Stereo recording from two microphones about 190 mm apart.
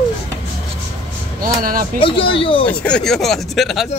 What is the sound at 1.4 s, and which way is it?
Speech, 50° right (ahead or behind).